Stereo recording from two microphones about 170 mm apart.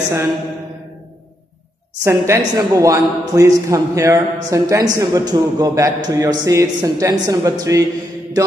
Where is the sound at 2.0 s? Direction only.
15° right (ahead or behind).